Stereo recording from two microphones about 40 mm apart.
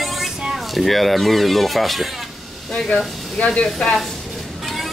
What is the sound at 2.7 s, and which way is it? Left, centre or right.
Speech, centre.